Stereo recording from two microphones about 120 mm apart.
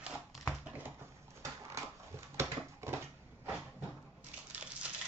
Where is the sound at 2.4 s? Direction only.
20° right (ahead or behind).